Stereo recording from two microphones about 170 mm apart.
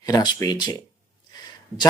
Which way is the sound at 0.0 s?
25° left (ahead or behind).